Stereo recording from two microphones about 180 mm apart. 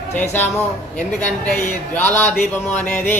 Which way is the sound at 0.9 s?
40° left (ahead or behind).